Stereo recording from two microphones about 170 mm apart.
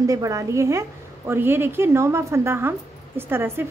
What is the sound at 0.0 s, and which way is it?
A woman's voice, 20° right (ahead or behind).